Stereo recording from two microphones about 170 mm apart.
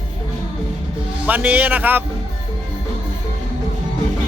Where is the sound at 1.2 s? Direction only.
10° right (ahead or behind).